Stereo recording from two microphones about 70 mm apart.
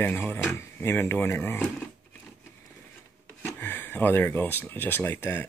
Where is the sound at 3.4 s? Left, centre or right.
Left.